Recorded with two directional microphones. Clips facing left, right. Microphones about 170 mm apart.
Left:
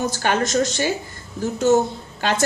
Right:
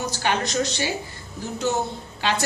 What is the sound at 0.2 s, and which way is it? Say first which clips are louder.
Speech: left 3 dB; 50° left (ahead or behind).